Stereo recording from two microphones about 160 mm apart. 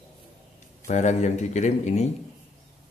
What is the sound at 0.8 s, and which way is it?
Speech, 50° left (ahead or behind).